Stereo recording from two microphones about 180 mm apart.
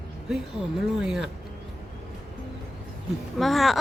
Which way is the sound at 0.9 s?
5° right (ahead or behind).